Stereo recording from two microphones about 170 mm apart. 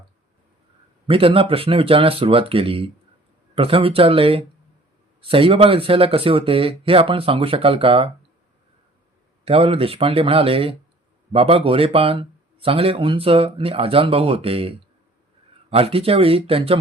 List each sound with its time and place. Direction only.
1.0 s speech: 30° right (ahead or behind)
9.4 s speech: 35° right (ahead or behind)